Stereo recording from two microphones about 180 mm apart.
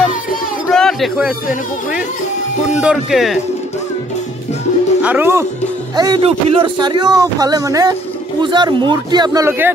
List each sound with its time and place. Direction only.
0.7 s a sound: centre (ahead or behind)
2.7 s speech: 5° right (ahead or behind)
5.0 s speech: 10° right (ahead or behind)
5.9 s speech: 25° right (ahead or behind)